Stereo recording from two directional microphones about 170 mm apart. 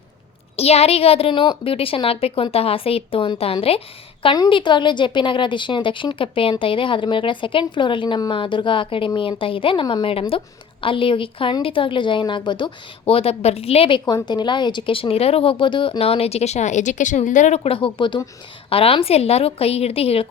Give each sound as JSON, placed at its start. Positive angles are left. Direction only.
{"t": 0.5, "sound": "a woman's voice", "side_deg": 35}